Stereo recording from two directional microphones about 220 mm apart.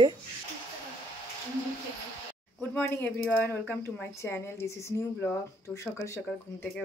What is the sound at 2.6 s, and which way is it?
Speech, 5° left (ahead or behind).